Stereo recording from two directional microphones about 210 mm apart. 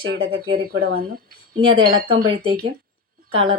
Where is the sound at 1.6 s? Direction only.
25° right (ahead or behind).